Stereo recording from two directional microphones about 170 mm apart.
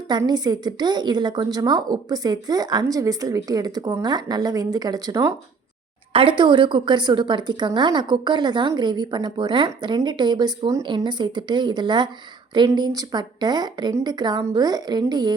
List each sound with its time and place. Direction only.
0.1 s a woman's voice: 25° right (ahead or behind)